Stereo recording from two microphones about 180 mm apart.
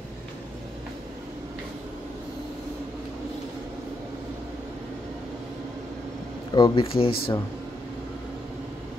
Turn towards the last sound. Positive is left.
turn(degrees=30)  # may be behind; listen again after turning